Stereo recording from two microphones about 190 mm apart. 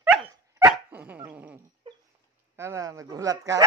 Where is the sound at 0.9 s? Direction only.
10° right (ahead or behind).